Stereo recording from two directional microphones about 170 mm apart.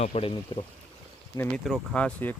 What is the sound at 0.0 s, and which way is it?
Speech, 35° left (ahead or behind).